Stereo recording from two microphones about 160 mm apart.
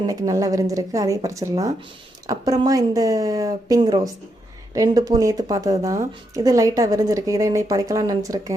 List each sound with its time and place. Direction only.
0.1 s a woman's voice: 20° right (ahead or behind)